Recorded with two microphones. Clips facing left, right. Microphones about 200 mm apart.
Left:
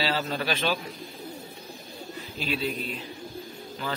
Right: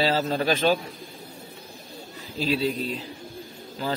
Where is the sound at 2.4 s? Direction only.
35° right (ahead or behind).